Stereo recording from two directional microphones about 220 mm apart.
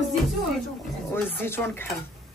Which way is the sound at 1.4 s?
10° left (ahead or behind).